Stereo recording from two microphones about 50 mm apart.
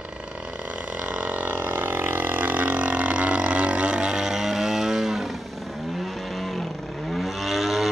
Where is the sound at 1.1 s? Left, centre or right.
Right; by 5.3 s centre.